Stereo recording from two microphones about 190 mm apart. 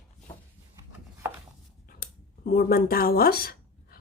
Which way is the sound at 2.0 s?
50° left (ahead or behind).